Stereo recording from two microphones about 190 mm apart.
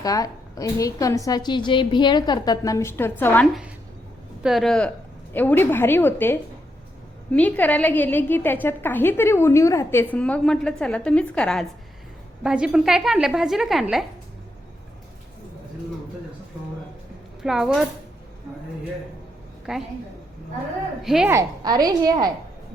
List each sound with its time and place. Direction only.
0.0 s a woman's voice: 20° left (ahead or behind)
4.4 s a woman's voice: centre (ahead or behind)
17.4 s a woman's voice: centre (ahead or behind)
19.7 s a woman's voice: 5° right (ahead or behind)
21.0 s a woman's voice: centre (ahead or behind)
21.2 s a woman's voice: 15° right (ahead or behind)